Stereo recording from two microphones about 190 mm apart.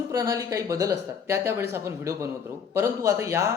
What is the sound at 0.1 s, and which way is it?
Speech, 15° right (ahead or behind).